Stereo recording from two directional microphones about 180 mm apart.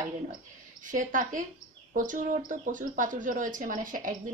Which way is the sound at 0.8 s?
45° right (ahead or behind).